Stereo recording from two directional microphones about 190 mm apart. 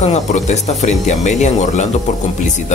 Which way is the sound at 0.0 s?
35° left (ahead or behind).